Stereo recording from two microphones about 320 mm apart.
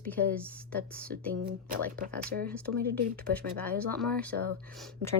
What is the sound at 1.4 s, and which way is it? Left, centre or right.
Speech, right.